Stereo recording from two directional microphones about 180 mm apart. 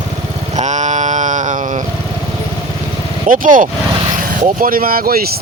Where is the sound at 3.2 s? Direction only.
50° right (ahead or behind).